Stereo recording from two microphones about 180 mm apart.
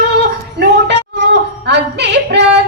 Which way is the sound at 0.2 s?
75° right (ahead or behind).